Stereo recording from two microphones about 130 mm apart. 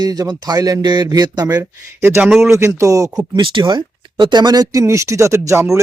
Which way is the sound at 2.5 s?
25° right (ahead or behind).